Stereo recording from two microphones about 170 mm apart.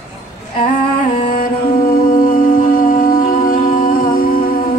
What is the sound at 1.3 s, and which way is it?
Humming, 55° left (ahead or behind).